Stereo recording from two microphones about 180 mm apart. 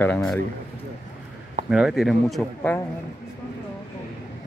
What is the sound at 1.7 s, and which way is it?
Speech, centre (ahead or behind).